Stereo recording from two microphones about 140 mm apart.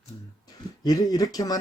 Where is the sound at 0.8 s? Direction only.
25° left (ahead or behind).